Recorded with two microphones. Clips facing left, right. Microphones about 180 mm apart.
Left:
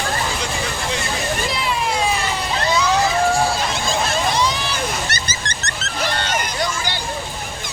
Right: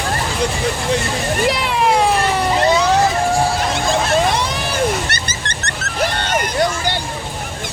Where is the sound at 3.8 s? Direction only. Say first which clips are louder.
Right 6 dB; 60° right (ahead or behind).